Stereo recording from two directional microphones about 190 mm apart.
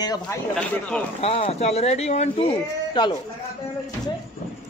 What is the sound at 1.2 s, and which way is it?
Speech, 30° left (ahead or behind).